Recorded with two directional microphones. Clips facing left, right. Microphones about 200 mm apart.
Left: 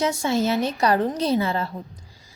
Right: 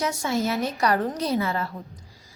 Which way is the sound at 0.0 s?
25° left (ahead or behind).